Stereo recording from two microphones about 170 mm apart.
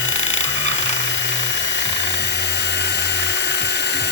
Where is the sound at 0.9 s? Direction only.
90° left.